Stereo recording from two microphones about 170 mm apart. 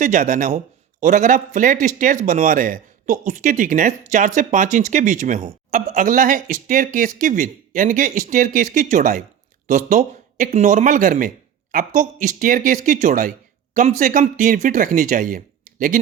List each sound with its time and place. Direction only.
0.0 s a man's voice: 50° right (ahead or behind)